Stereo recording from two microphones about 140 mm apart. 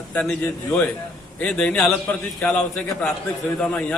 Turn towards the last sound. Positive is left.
turn(degrees=5)  # may be behind; listen again after turning